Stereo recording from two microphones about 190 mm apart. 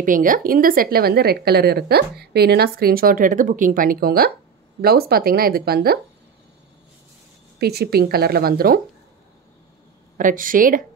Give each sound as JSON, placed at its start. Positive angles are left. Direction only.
{"t": 0.0, "sound": "a woman's voice", "side_deg": -45}
{"t": 7.5, "sound": "a woman's voice", "side_deg": -55}
{"t": 10.1, "sound": "a woman's voice", "side_deg": -45}